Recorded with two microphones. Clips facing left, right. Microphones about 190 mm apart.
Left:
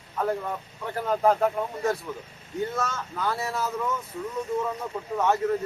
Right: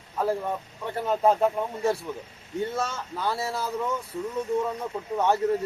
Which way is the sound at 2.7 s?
30° right (ahead or behind).